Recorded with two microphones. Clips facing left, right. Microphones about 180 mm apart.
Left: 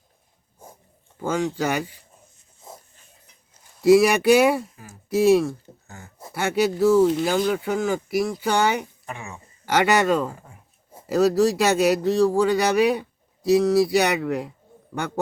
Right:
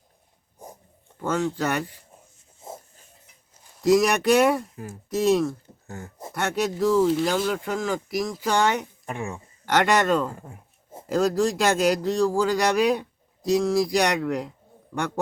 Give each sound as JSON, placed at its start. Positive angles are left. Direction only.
{"t": 1.2, "sound": "speech", "side_deg": 10}
{"t": 3.8, "sound": "a man's voice", "side_deg": 10}
{"t": 9.0, "sound": "speech", "side_deg": -50}
{"t": 9.3, "sound": "a man's voice", "side_deg": 5}